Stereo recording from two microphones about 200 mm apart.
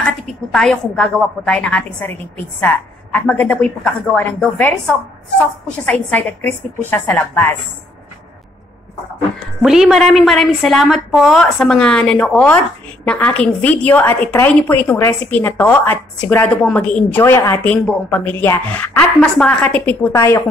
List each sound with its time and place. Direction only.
0.0 s a woman's voice: centre (ahead or behind)
5.9 s a woman's voice: 10° left (ahead or behind)
9.6 s a woman's voice: centre (ahead or behind); by 20.4 s 15° left (ahead or behind)